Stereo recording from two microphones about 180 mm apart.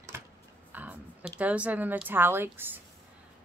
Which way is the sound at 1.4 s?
10° right (ahead or behind).